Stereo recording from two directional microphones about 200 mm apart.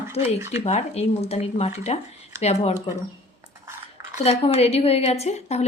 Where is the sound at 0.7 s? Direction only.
35° left (ahead or behind).